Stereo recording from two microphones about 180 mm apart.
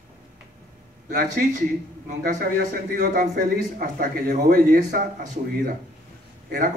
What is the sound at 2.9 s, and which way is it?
A man's voice, 45° right (ahead or behind).